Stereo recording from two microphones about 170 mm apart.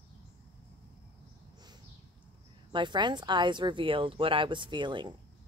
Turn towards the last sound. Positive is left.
turn(degrees=-25)  # may be behind; listen again after turning